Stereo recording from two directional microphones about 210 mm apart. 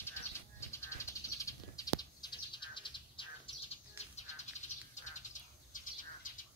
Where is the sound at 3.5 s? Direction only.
25° left (ahead or behind).